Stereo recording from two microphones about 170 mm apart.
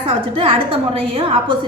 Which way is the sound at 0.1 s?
35° right (ahead or behind).